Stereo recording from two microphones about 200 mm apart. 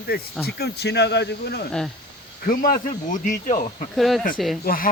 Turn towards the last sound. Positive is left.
turn(degrees=45)  # may be behind; listen again after turning